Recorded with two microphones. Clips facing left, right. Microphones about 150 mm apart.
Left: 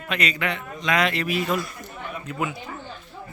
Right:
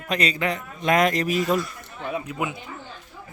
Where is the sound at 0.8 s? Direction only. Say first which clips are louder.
Right 3 dB; 45° right (ahead or behind).